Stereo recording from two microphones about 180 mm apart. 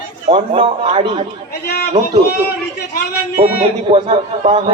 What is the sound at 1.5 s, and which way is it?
Speech, 60° left (ahead or behind).